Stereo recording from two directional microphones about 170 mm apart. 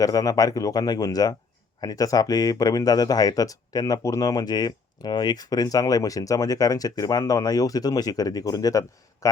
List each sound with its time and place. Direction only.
0.0 s speech: 20° left (ahead or behind)